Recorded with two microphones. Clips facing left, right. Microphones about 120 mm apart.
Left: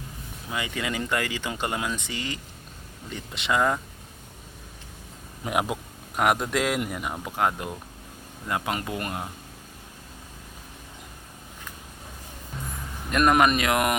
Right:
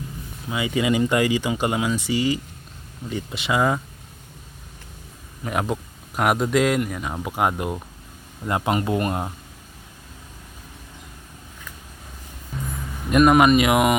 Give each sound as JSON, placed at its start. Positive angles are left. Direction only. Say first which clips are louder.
{"t": 0.5, "sound": "speech", "louder": "right 8 dB", "side_deg": -10}
{"t": 5.5, "sound": "a man's voice", "louder": "right 2 dB", "side_deg": 10}
{"t": 7.1, "sound": "speech", "louder": "right 2 dB", "side_deg": -10}
{"t": 8.4, "sound": "speech", "louder": "right 6 dB", "side_deg": -25}
{"t": 13.1, "sound": "speech", "louder": "right 5 dB", "side_deg": -10}